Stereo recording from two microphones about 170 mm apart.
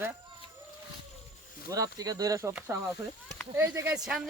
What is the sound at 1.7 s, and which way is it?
Speech, 20° right (ahead or behind).